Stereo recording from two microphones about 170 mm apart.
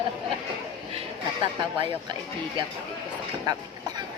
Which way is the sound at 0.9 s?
30° right (ahead or behind).